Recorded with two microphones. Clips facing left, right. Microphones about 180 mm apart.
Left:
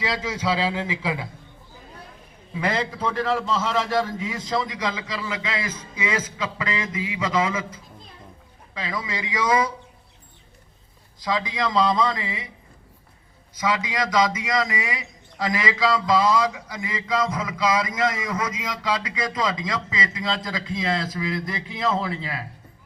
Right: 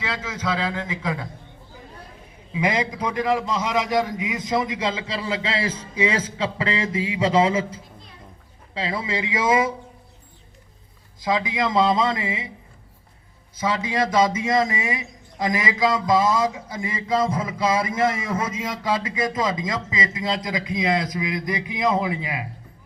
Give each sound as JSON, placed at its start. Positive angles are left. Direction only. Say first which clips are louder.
{"t": 0.0, "sound": "a man's voice", "louder": "left 2 dB", "side_deg": 10}
{"t": 2.5, "sound": "a man's voice", "louder": "right 2 dB", "side_deg": -10}
{"t": 8.7, "sound": "a man's voice", "louder": "right 4 dB", "side_deg": -30}
{"t": 11.2, "sound": "a man's voice", "louder": "right 2 dB", "side_deg": -20}
{"t": 13.6, "sound": "a man's voice", "louder": "right 2 dB", "side_deg": -30}